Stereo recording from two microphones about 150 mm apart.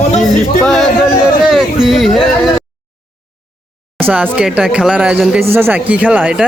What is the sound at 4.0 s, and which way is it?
Speech, 10° right (ahead or behind).